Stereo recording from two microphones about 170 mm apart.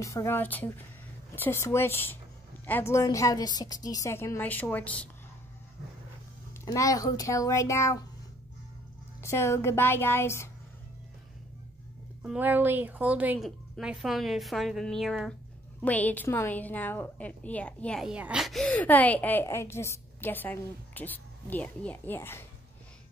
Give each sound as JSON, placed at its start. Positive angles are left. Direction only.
{"t": 0.0, "sound": "a woman's voice", "side_deg": 15}
{"t": 6.6, "sound": "a woman's voice", "side_deg": 20}
{"t": 9.2, "sound": "a woman's voice", "side_deg": 15}
{"t": 12.2, "sound": "a woman's voice", "side_deg": -10}
{"t": 18.0, "sound": "a woman's voice", "side_deg": -5}